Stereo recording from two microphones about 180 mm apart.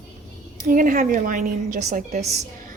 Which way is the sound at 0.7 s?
50° right (ahead or behind).